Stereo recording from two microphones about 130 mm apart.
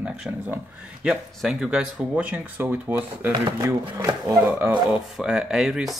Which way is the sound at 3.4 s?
30° right (ahead or behind).